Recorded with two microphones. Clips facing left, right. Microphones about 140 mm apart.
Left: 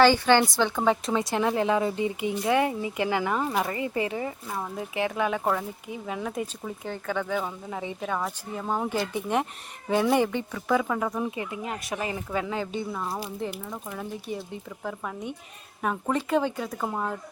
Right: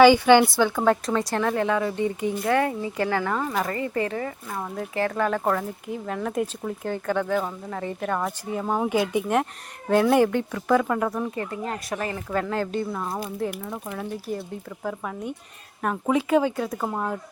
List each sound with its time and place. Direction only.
0.0 s speech: 15° right (ahead or behind)
0.6 s speech: centre (ahead or behind)
1.4 s speech: 20° left (ahead or behind); by 9.2 s 10° right (ahead or behind)
9.2 s speech: centre (ahead or behind)
11.2 s speech: 10° left (ahead or behind)
12.4 s speech: centre (ahead or behind)